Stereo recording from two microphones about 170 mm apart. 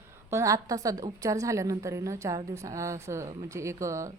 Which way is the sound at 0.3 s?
20° right (ahead or behind).